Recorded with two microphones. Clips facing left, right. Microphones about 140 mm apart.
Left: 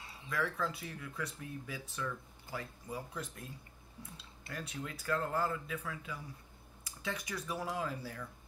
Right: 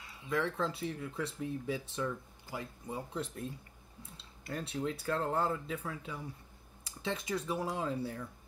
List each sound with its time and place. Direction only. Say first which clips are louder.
0.3 s speech: right 3 dB; 25° right (ahead or behind)